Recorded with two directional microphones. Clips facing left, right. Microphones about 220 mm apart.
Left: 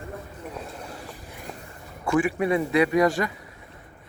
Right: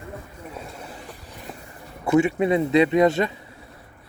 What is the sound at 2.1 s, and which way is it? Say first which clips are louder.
Speech: right 4 dB; 25° right (ahead or behind).